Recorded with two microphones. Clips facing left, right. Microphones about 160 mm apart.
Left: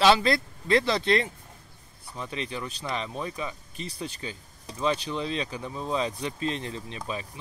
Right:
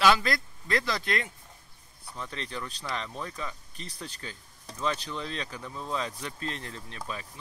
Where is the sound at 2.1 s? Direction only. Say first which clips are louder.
Left 4 dB; 15° left (ahead or behind).